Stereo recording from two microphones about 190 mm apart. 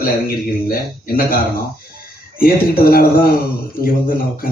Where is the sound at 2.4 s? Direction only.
50° left (ahead or behind).